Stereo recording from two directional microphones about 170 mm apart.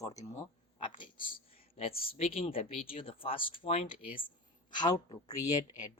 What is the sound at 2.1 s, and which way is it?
A woman's voice, 35° left (ahead or behind).